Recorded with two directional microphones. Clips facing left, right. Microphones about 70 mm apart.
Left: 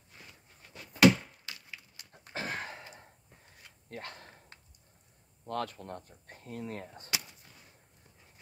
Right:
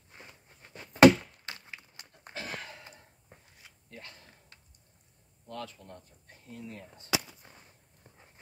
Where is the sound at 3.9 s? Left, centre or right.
Left.